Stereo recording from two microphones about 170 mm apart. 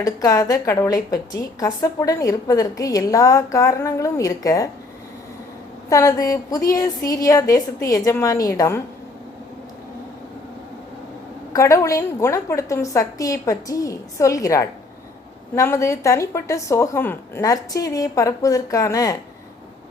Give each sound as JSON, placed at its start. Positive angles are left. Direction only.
{"t": 0.0, "sound": "a woman's voice", "side_deg": 20}
{"t": 5.9, "sound": "a woman's voice", "side_deg": 20}
{"t": 11.5, "sound": "a woman's voice", "side_deg": 20}